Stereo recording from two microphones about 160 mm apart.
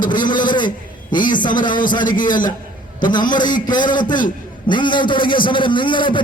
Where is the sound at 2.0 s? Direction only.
55° left (ahead or behind).